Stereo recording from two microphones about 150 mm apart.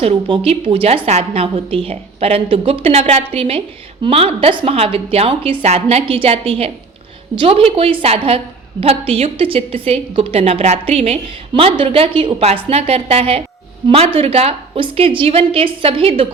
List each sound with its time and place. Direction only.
0.0 s a woman's voice: 40° right (ahead or behind)